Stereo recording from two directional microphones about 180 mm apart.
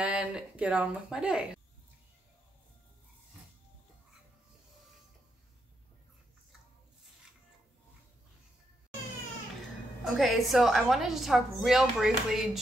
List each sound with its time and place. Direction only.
0.0 s speech: 5° right (ahead or behind)
10.0 s a woman's voice: centre (ahead or behind)